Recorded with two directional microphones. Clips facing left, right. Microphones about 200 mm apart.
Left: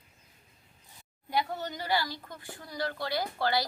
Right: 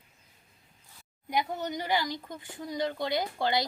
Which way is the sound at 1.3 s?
15° right (ahead or behind).